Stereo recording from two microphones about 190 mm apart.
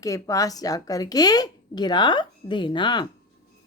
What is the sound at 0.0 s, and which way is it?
A woman's voice, 15° left (ahead or behind).